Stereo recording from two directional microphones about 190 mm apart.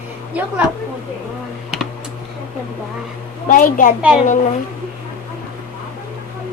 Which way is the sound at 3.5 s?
45° left (ahead or behind).